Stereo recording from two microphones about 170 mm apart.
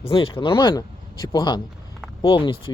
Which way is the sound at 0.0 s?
30° left (ahead or behind).